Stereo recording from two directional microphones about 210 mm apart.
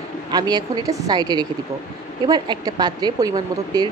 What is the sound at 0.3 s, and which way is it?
Speech, 20° right (ahead or behind).